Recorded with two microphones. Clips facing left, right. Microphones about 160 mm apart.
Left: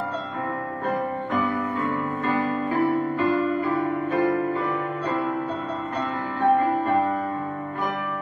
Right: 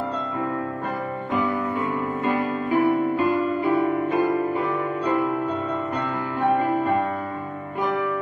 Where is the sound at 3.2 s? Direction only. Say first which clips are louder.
Even; 15° right (ahead or behind).